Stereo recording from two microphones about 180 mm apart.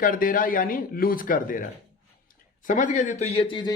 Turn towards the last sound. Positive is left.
turn(degrees=25)  # may be behind; listen again after turning